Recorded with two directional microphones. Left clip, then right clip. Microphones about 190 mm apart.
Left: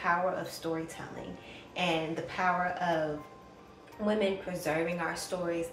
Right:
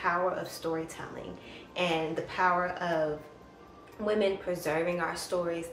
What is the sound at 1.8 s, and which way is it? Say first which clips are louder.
Speech: right 1 dB; 15° right (ahead or behind).